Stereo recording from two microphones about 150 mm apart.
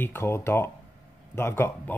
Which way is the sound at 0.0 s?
15° left (ahead or behind).